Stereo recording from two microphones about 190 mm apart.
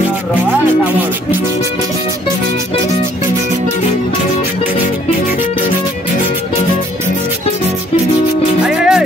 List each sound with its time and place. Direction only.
8.6 s music: 5° right (ahead or behind)